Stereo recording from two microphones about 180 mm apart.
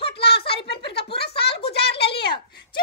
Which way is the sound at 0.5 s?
65° left (ahead or behind).